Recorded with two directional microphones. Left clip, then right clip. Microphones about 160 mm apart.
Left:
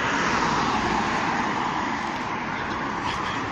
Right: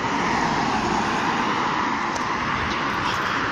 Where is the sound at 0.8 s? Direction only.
Centre (ahead or behind).